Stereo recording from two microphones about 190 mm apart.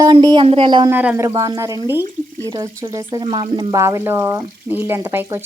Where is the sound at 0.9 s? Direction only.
10° right (ahead or behind).